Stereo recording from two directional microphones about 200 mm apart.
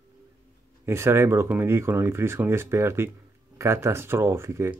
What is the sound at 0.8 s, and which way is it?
Speech, 10° right (ahead or behind).